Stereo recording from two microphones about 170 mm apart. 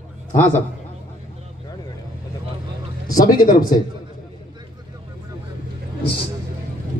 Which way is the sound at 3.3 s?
20° left (ahead or behind).